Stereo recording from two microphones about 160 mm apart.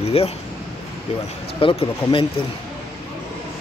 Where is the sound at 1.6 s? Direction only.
35° left (ahead or behind).